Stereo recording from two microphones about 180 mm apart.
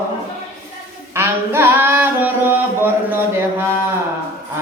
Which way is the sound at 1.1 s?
15° right (ahead or behind).